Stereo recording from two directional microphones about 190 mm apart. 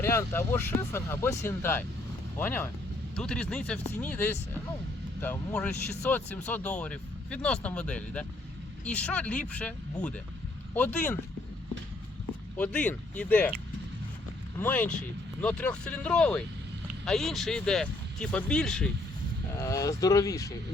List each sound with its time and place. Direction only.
0.0 s speech: 15° left (ahead or behind)
12.5 s speech: 5° left (ahead or behind)
14.6 s speech: 10° left (ahead or behind)
19.5 s speech: 15° left (ahead or behind)